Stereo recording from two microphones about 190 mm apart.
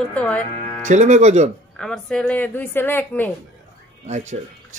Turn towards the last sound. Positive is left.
turn(degrees=-40)  # may be behind; listen again after turning